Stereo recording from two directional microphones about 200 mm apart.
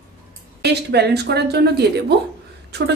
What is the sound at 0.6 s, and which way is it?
A woman's voice, 55° right (ahead or behind).